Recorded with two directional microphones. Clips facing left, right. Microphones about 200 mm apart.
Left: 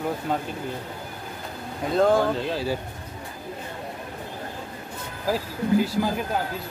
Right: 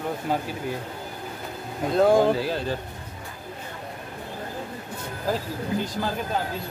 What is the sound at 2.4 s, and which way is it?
Speech, 5° left (ahead or behind).